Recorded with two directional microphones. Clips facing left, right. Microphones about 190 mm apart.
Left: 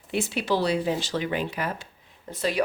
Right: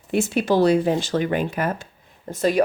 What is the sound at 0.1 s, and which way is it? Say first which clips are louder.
Speech: right 6 dB; 45° right (ahead or behind).